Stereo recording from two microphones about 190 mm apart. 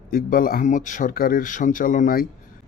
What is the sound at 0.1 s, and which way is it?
Speech, 50° left (ahead or behind).